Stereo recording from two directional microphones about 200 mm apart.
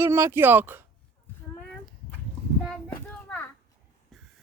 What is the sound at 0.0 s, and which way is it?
Speech, 15° right (ahead or behind).